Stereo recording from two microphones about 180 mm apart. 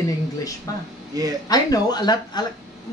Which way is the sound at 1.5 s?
20° left (ahead or behind).